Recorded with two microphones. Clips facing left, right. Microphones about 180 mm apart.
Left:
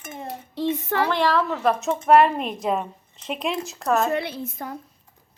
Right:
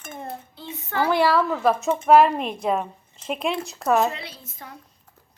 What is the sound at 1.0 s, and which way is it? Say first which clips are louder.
Speech: right 3 dB; 10° right (ahead or behind).